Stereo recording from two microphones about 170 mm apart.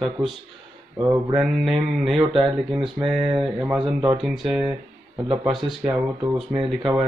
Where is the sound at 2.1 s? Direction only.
35° right (ahead or behind).